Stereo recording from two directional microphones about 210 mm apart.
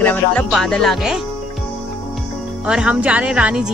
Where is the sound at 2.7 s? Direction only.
5° right (ahead or behind).